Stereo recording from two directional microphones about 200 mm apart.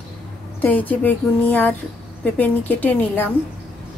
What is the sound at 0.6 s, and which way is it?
A woman's voice, 10° left (ahead or behind).